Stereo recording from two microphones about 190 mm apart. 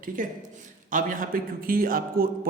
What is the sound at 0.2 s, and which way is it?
A man's voice, 45° right (ahead or behind).